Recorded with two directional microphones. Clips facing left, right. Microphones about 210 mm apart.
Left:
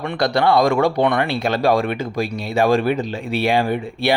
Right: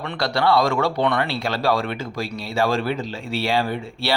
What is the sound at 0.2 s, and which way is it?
Speech, 15° left (ahead or behind).